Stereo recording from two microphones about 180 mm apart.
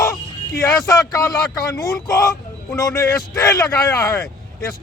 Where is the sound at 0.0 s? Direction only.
15° left (ahead or behind).